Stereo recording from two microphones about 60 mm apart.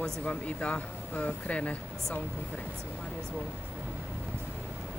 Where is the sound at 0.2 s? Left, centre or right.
Centre.